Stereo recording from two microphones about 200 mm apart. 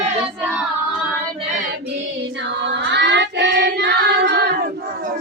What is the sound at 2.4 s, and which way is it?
Child singing, 60° right (ahead or behind).